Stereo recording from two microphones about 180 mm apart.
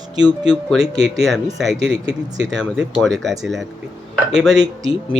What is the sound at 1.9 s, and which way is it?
Speech, 20° right (ahead or behind).